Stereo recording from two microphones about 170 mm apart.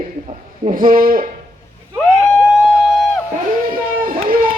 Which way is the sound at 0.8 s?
55° right (ahead or behind).